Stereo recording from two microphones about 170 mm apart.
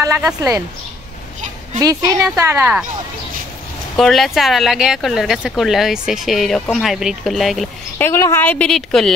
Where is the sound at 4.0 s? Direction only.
Centre (ahead or behind).